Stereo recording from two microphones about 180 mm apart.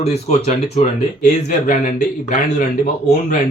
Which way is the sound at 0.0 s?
35° left (ahead or behind).